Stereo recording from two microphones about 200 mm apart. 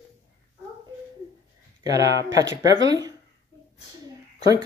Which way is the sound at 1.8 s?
15° right (ahead or behind).